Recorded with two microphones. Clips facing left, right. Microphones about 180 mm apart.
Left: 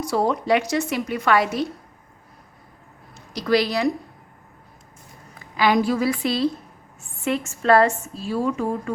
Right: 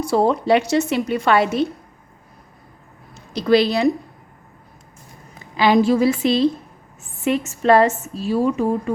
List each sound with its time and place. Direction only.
0.0 s a woman's voice: 30° right (ahead or behind)
3.2 s a woman's voice: 25° right (ahead or behind)
5.4 s a woman's voice: 25° right (ahead or behind)